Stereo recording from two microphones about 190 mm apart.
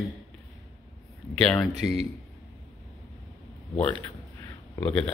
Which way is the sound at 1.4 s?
5° left (ahead or behind).